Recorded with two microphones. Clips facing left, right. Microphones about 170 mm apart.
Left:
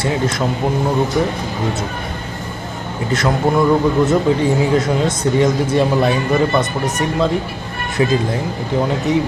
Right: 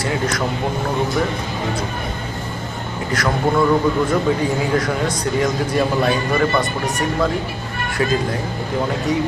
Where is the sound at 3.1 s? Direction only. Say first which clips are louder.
Left 3 dB; 25° left (ahead or behind).